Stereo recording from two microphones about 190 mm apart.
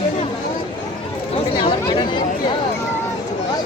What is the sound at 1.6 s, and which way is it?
Speech, 25° left (ahead or behind).